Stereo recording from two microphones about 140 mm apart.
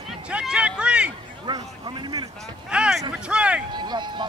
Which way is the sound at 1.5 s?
35° right (ahead or behind).